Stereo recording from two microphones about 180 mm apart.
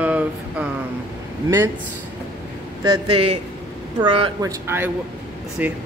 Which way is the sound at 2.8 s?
25° right (ahead or behind).